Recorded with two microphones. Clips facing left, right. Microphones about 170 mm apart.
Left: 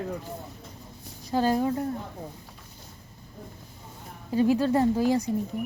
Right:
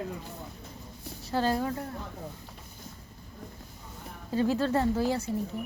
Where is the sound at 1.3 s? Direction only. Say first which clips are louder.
Left 4 dB; 15° left (ahead or behind).